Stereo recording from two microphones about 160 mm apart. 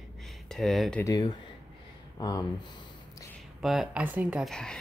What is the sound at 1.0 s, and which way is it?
Speech, 25° left (ahead or behind).